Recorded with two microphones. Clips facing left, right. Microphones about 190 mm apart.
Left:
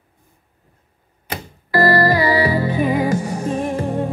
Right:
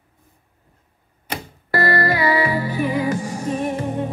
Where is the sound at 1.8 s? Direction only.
35° left (ahead or behind).